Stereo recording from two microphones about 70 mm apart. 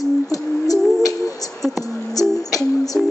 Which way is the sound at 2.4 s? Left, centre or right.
Left.